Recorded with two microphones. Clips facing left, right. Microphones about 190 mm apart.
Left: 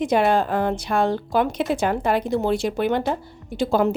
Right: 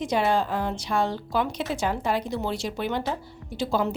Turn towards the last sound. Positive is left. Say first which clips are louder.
# left 6 dB
turn(degrees=55)  # may be behind; listen again after turning